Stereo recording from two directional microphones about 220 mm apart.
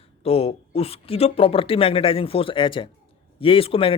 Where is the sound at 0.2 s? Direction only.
25° left (ahead or behind).